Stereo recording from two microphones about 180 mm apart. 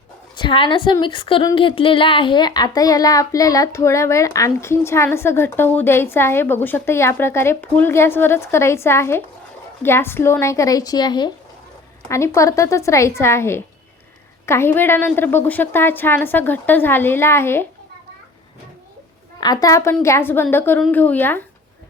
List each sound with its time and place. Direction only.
0.3 s a woman's voice: 25° left (ahead or behind)
19.4 s a woman's voice: 20° left (ahead or behind)